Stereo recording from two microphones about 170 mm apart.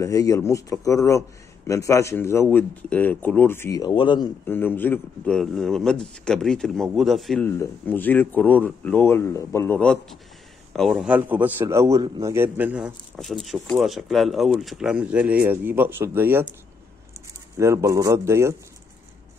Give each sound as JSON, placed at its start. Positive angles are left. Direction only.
{"t": 0.0, "sound": "speech", "side_deg": 20}
{"t": 4.5, "sound": "a man's voice", "side_deg": 10}
{"t": 7.4, "sound": "a man's voice", "side_deg": 15}
{"t": 17.6, "sound": "a man's voice", "side_deg": -20}